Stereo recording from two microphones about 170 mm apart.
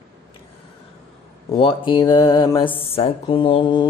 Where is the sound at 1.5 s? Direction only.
30° left (ahead or behind).